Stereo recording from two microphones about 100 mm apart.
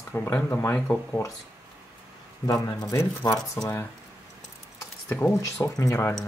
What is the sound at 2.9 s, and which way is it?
Speech, 30° left (ahead or behind).